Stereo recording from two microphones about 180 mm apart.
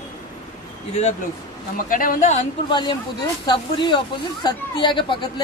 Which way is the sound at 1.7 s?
50° left (ahead or behind).